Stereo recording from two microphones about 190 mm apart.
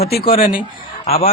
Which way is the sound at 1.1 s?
30° left (ahead or behind).